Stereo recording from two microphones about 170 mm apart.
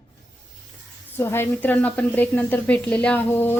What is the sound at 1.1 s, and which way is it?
Speech, 15° left (ahead or behind).